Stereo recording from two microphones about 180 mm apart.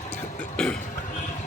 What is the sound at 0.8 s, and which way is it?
Cough, 45° left (ahead or behind).